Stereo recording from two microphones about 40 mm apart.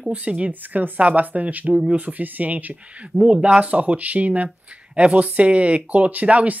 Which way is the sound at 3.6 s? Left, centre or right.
Right.